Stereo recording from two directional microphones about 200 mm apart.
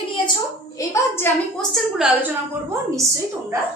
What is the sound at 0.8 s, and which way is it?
Speech, 10° left (ahead or behind).